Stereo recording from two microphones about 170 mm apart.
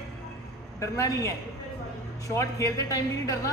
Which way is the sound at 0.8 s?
20° left (ahead or behind).